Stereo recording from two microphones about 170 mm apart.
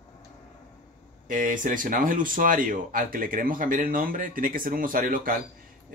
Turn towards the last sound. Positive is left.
turn(degrees=-55)  # may be behind; listen again after turning